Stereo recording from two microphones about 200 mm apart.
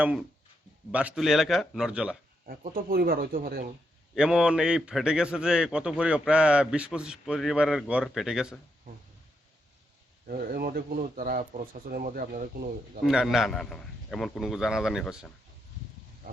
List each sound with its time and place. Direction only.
0.0 s a man's voice: 5° right (ahead or behind)
2.5 s speech: 45° right (ahead or behind)
4.1 s a man's voice: 5° right (ahead or behind)
10.2 s speech: 45° right (ahead or behind)
13.0 s a man's voice: centre (ahead or behind)